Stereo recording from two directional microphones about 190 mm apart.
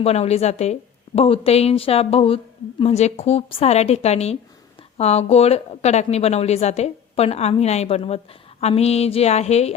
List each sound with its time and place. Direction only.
0.0 s speech: 35° left (ahead or behind)